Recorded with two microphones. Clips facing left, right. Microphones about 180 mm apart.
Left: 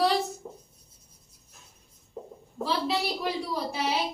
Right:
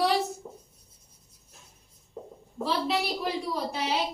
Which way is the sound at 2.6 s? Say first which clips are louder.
Even; centre (ahead or behind).